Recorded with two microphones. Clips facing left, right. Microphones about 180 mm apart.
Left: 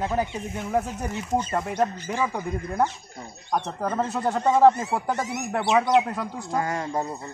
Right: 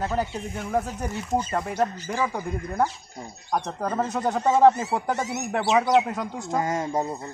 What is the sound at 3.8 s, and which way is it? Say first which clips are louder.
Speech: even; centre (ahead or behind).